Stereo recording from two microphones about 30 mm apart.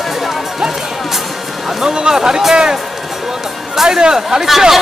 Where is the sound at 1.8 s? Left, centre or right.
Right.